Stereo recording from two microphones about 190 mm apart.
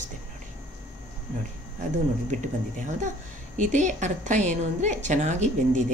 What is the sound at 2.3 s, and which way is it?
A woman's voice, 40° right (ahead or behind).